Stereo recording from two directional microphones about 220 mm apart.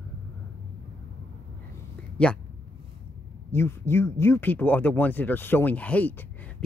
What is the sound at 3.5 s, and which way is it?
Speech, 10° left (ahead or behind).